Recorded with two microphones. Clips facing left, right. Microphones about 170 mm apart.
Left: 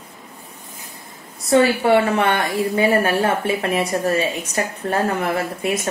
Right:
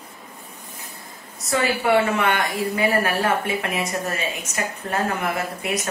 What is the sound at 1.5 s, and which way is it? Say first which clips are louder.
A woman's voice: left 6 dB; 30° left (ahead or behind).